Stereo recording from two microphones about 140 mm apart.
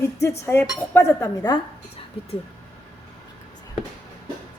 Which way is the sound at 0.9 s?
20° left (ahead or behind).